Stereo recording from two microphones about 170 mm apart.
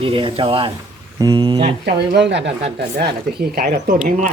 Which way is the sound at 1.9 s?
80° right.